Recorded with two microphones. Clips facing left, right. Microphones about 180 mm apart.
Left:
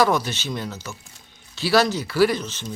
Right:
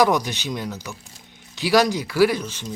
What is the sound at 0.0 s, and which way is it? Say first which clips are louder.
Speech: right 1 dB; 15° right (ahead or behind).